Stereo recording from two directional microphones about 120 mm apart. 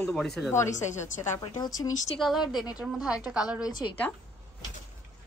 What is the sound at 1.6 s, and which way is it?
Speech, 30° left (ahead or behind).